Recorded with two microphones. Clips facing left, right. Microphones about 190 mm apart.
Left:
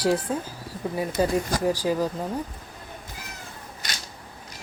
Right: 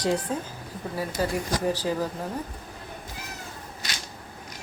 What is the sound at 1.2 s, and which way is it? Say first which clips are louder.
Speech: left 4 dB; 20° left (ahead or behind).